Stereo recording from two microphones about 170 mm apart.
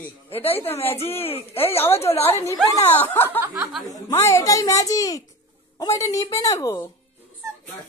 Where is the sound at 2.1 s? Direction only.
35° left (ahead or behind).